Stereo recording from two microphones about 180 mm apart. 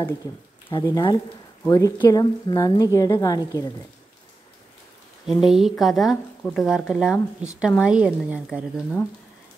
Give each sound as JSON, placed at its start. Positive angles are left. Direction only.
{"t": 0.7, "sound": "speech", "side_deg": 25}
{"t": 5.2, "sound": "speech", "side_deg": 0}